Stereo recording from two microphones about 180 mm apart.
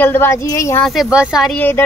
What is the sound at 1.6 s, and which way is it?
Speech, 10° left (ahead or behind).